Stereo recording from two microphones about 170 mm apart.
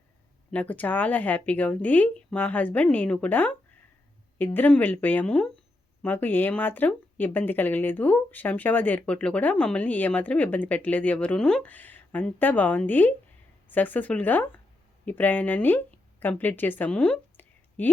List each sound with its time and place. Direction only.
0.5 s speech: 10° left (ahead or behind)
4.5 s speech: 10° left (ahead or behind)